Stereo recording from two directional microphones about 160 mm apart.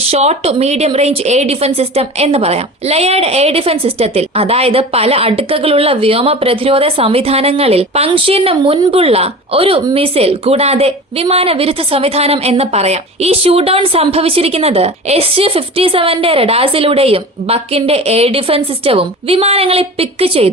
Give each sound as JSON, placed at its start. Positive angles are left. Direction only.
{"t": 0.1, "sound": "a woman's voice", "side_deg": -40}